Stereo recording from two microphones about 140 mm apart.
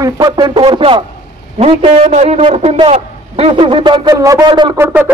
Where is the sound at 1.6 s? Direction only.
50° right (ahead or behind).